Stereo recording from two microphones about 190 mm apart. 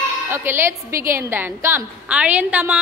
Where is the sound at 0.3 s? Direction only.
10° right (ahead or behind).